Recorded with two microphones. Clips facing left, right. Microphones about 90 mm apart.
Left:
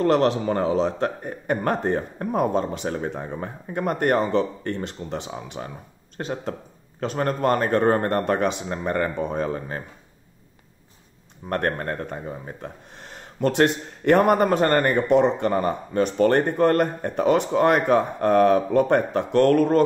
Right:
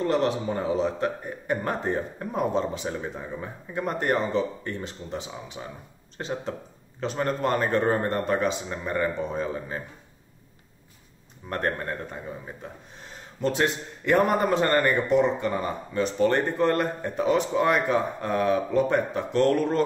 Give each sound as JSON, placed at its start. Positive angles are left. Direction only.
{"t": 0.0, "sound": "a man's voice", "side_deg": 70}
{"t": 5.6, "sound": "speech", "side_deg": 40}
{"t": 11.4, "sound": "a man's voice", "side_deg": 50}